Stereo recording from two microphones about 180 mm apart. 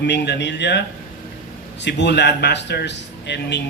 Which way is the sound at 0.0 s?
70° left (ahead or behind).